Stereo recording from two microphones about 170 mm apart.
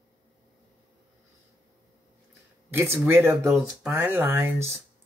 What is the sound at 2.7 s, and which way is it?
Speech, 15° right (ahead or behind).